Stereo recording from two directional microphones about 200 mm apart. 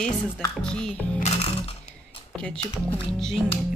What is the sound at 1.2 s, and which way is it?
Music, 30° left (ahead or behind).